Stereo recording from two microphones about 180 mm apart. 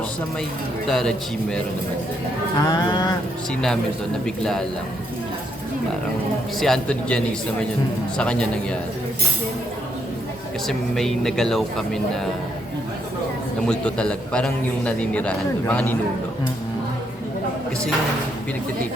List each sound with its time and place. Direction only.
0.9 s speech: centre (ahead or behind)
2.6 s a sound: 20° left (ahead or behind)
6.6 s speech: 5° left (ahead or behind)
8.2 s speech: 5° left (ahead or behind)
10.7 s speech: centre (ahead or behind)
13.7 s a man's voice: 5° left (ahead or behind)